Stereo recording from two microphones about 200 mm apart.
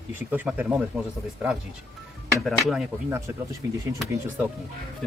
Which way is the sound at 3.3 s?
10° right (ahead or behind).